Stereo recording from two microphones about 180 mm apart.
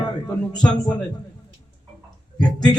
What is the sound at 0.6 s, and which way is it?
Speech, 10° left (ahead or behind).